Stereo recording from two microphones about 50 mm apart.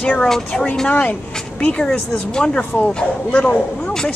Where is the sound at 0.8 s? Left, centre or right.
Left; by 2.6 s centre.